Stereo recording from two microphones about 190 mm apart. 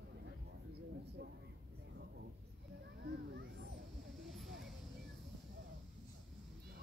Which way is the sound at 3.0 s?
65° right (ahead or behind).